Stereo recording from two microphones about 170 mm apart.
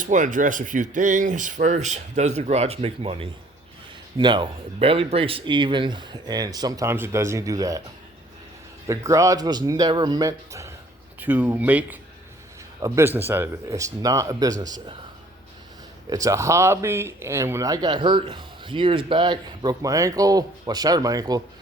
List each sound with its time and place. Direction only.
0.0 s speech: 50° right (ahead or behind); by 7.8 s 20° right (ahead or behind)
8.9 s speech: 20° right (ahead or behind)
16.0 s speech: 20° right (ahead or behind)